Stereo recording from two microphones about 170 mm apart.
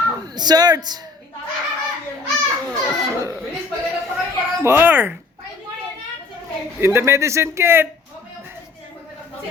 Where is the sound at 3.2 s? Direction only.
15° right (ahead or behind).